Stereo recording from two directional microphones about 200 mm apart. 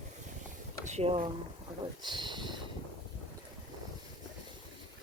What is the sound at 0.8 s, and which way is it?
Speech, 35° right (ahead or behind).